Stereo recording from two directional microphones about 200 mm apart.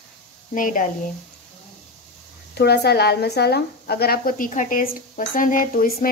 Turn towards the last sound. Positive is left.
turn(degrees=40)  # may be behind; listen again after turning